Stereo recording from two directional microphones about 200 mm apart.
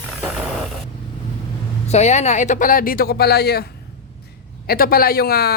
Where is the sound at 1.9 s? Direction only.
35° left (ahead or behind).